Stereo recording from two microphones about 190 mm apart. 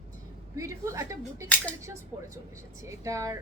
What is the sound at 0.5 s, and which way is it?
Speech, 15° right (ahead or behind).